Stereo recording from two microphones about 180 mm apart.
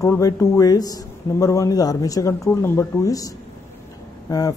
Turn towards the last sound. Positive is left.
turn(degrees=20)  # may be behind; listen again after turning